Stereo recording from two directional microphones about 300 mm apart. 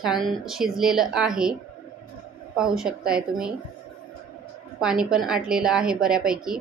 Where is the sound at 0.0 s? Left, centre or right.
Centre.